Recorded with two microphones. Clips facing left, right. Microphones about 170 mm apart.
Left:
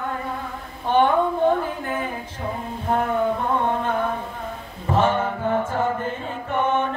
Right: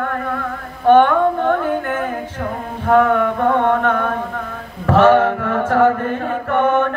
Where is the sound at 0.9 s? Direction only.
75° right (ahead or behind).